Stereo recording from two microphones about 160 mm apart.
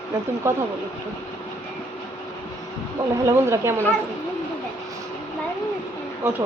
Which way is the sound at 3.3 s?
15° right (ahead or behind).